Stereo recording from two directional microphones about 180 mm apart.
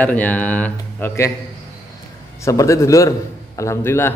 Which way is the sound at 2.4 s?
15° left (ahead or behind).